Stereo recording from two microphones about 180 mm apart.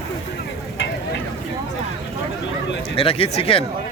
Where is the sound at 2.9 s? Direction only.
30° left (ahead or behind).